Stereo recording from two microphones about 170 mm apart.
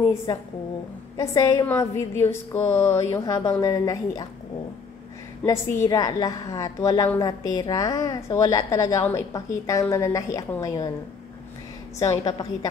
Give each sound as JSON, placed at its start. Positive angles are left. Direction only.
{"t": 1.1, "sound": "a woman's voice", "side_deg": 20}
{"t": 5.4, "sound": "a woman's voice", "side_deg": 15}
{"t": 12.0, "sound": "a woman's voice", "side_deg": 20}